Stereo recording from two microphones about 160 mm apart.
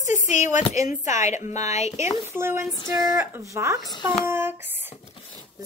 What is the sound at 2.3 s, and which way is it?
A woman's voice, 15° right (ahead or behind).